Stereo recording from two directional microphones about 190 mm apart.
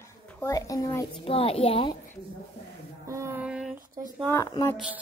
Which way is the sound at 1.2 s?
30° left (ahead or behind).